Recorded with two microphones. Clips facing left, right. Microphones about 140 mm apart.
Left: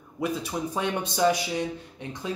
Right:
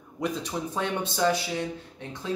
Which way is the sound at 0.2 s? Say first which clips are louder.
Left 1 dB; 10° left (ahead or behind).